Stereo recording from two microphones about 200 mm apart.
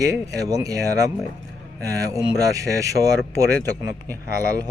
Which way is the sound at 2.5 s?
15° right (ahead or behind).